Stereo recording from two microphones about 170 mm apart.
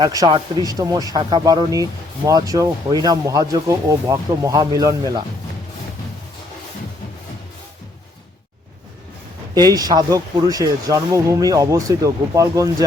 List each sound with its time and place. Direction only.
0.0 s speech: 20° right (ahead or behind)
9.6 s speech: 25° right (ahead or behind)